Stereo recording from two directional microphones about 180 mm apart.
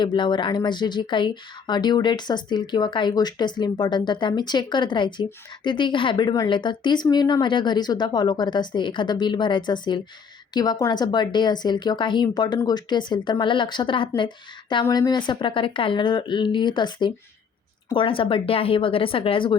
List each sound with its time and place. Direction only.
0.0 s speech: 25° left (ahead or behind)